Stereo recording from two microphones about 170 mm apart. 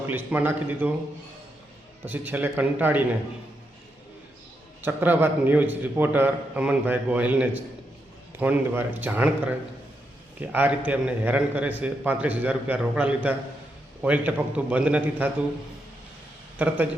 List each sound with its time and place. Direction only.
0.1 s a man's voice: 10° right (ahead or behind)
2.0 s a man's voice: 10° right (ahead or behind)
4.8 s a man's voice: 10° right (ahead or behind)
16.6 s a man's voice: 10° right (ahead or behind)